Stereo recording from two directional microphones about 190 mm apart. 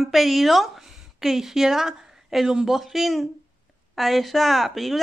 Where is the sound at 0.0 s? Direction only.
Centre (ahead or behind).